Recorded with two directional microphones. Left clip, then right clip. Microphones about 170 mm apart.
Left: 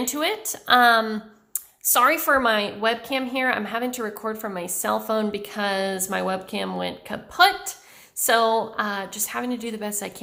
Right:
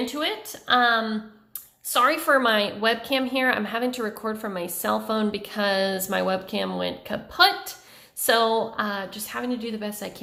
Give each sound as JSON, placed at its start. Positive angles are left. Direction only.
{"t": 0.1, "sound": "a woman's voice", "side_deg": 25}
{"t": 2.2, "sound": "a woman's voice", "side_deg": 10}